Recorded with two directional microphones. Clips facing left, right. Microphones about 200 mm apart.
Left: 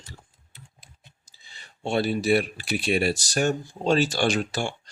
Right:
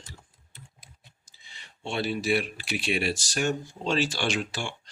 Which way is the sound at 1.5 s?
40° left (ahead or behind).